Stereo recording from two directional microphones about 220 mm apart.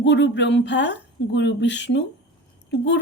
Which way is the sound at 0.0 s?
55° left (ahead or behind).